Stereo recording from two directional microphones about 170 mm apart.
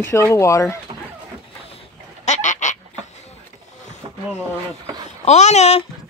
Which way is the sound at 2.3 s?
45° left (ahead or behind).